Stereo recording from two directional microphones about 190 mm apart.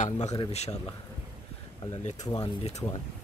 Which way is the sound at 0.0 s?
35° left (ahead or behind).